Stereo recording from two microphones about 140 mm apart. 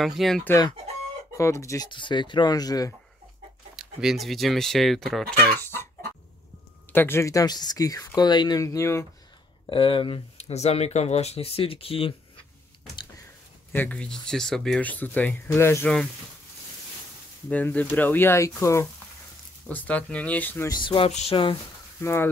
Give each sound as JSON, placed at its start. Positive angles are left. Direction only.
{"t": 0.0, "sound": "speech", "side_deg": 0}
{"t": 1.3, "sound": "speech", "side_deg": 20}
{"t": 1.9, "sound": "speech", "side_deg": 35}
{"t": 3.7, "sound": "speech", "side_deg": -5}
{"t": 5.4, "sound": "speech", "side_deg": 15}
{"t": 6.9, "sound": "speech", "side_deg": 15}
{"t": 9.7, "sound": "speech", "side_deg": 40}
{"t": 13.7, "sound": "speech", "side_deg": 10}
{"t": 17.5, "sound": "speech", "side_deg": 10}
{"t": 19.7, "sound": "speech", "side_deg": 10}
{"t": 20.6, "sound": "speech", "side_deg": 30}
{"t": 21.1, "sound": "speech", "side_deg": 50}
{"t": 22.0, "sound": "speech", "side_deg": 15}